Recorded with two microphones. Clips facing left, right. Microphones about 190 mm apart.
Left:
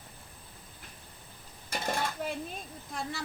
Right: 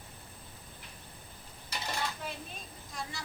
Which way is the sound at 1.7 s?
50° left (ahead or behind).